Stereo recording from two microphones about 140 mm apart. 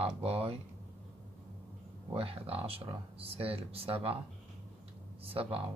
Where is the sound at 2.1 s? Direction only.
40° right (ahead or behind).